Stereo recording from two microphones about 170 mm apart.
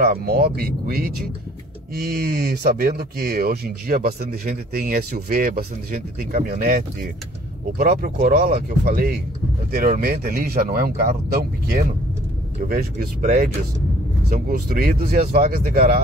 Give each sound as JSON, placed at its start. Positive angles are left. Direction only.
{"t": 0.0, "sound": "speech", "side_deg": -65}
{"t": 12.6, "sound": "speech", "side_deg": -60}